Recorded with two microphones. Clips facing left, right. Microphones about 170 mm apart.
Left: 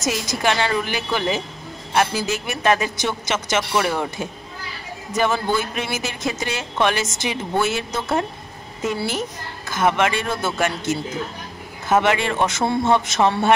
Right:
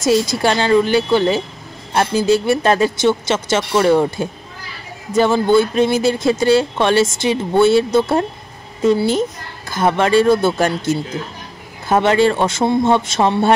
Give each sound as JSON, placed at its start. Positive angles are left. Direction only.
{"t": 0.0, "sound": "a woman's voice", "side_deg": -30}